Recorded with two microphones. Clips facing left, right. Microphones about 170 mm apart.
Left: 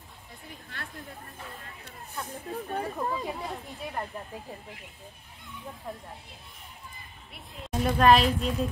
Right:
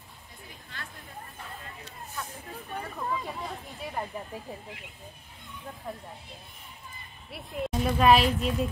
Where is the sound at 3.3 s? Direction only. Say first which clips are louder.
Left 2 dB; 20° left (ahead or behind).